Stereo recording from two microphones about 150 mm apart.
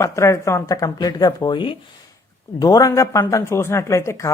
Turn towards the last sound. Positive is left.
turn(degrees=20)  # may be behind; listen again after turning